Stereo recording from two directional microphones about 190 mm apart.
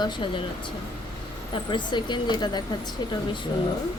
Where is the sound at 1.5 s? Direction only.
25° left (ahead or behind).